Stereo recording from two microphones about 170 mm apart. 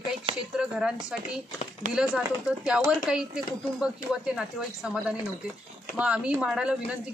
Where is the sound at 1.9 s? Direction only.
5° right (ahead or behind).